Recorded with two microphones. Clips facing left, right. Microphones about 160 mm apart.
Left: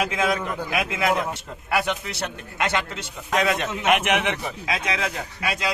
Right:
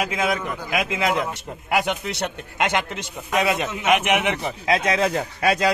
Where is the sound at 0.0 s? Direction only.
10° right (ahead or behind).